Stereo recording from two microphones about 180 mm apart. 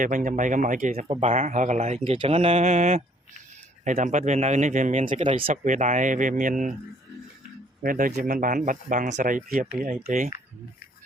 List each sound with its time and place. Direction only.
0.0 s speech: 45° right (ahead or behind)
1.0 s speech: 35° right (ahead or behind)
7.8 s speech: 50° right (ahead or behind)